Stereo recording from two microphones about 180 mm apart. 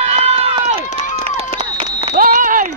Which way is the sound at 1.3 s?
35° right (ahead or behind).